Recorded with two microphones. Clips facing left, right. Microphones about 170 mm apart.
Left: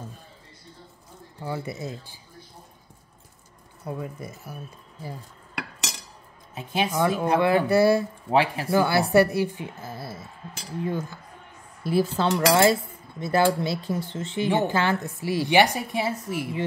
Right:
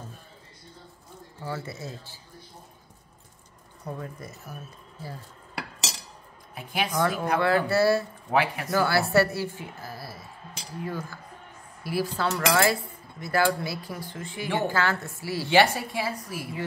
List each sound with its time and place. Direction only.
1.4 s a woman's voice: 15° left (ahead or behind)
3.8 s a woman's voice: 10° left (ahead or behind)
6.5 s a woman's voice: 25° left (ahead or behind)
8.3 s speech: 30° left (ahead or behind)
8.8 s a woman's voice: 20° left (ahead or behind)